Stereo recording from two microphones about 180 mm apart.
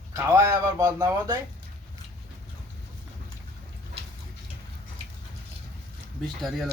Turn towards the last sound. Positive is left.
turn(degrees=0)  # may be behind; listen again after turning